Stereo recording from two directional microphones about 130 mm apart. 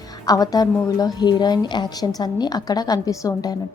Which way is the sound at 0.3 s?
30° left (ahead or behind).